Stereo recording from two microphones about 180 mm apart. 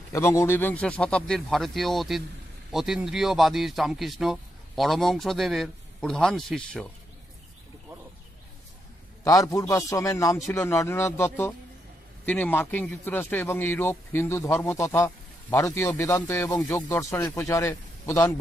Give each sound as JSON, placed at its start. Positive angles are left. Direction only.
{"t": 0.1, "sound": "a man's voice", "side_deg": 15}
{"t": 9.2, "sound": "a man's voice", "side_deg": 20}